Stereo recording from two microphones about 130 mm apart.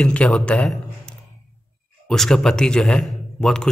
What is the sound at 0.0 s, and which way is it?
A man's voice, 10° left (ahead or behind).